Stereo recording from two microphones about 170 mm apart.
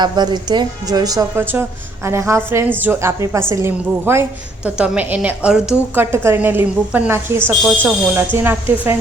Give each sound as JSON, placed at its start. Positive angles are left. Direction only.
{"t": 0.0, "sound": "a woman's voice", "side_deg": -25}